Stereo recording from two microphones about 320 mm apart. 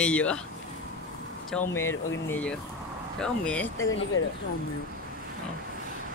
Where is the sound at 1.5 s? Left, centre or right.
Centre.